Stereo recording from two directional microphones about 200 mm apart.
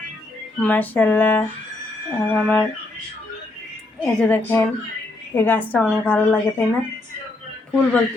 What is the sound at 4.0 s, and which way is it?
A woman's voice, 10° left (ahead or behind).